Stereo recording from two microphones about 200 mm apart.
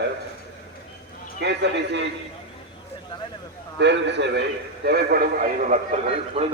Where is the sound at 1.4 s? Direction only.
60° right (ahead or behind).